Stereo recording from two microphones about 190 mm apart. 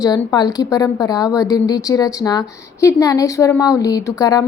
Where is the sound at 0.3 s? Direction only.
20° left (ahead or behind).